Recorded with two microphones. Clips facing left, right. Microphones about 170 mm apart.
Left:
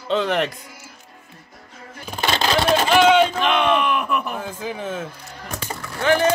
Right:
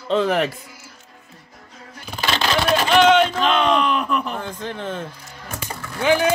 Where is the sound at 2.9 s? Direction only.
5° left (ahead or behind).